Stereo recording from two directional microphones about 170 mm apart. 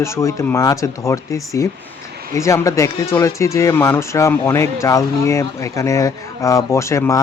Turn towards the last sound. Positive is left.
turn(degrees=15)  # may be behind; listen again after turning